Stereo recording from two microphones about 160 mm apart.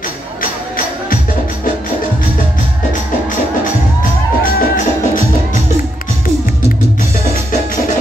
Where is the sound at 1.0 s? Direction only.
60° left (ahead or behind).